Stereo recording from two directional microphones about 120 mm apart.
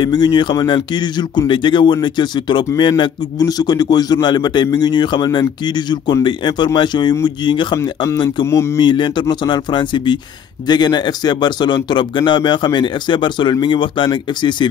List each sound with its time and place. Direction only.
0.0 s a man's voice: 40° left (ahead or behind)